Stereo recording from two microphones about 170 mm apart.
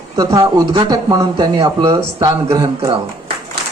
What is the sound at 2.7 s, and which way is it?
Speech, 35° right (ahead or behind).